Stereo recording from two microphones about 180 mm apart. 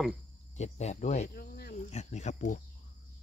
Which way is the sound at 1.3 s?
55° left (ahead or behind).